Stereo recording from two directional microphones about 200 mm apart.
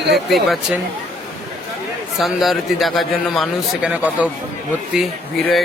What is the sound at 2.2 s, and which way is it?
A man's voice, centre (ahead or behind).